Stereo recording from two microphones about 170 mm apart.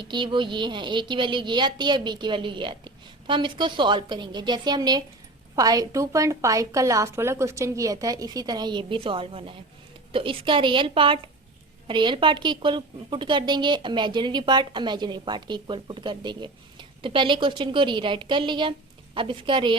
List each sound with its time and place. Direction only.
0.0 s a woman's voice: 25° right (ahead or behind)